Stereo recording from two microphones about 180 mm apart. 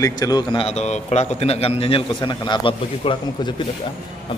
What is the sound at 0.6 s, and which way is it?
A man's voice, 40° left (ahead or behind).